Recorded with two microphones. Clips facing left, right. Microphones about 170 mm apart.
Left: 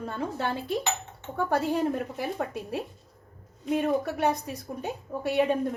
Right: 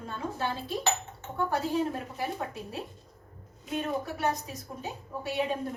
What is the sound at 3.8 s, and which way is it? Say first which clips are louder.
A woman's voice: left 4 dB; 65° left (ahead or behind).